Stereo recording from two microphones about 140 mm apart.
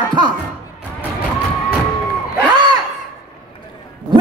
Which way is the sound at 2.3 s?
30° right (ahead or behind).